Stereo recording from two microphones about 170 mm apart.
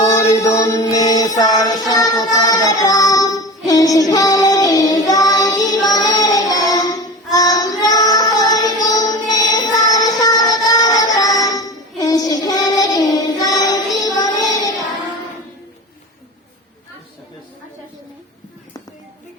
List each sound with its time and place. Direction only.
0.0 s music: 15° left (ahead or behind)
1.4 s child singing: 20° left (ahead or behind)
9.6 s music: 20° left (ahead or behind)